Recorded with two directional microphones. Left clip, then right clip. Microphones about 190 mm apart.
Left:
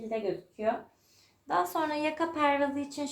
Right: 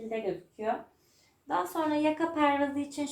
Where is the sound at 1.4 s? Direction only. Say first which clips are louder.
Left 1 dB; 40° left (ahead or behind).